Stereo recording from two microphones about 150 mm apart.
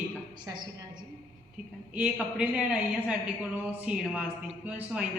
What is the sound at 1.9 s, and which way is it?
A woman's voice, 5° right (ahead or behind).